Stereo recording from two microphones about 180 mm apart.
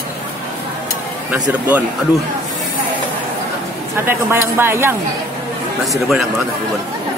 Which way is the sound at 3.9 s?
15° right (ahead or behind).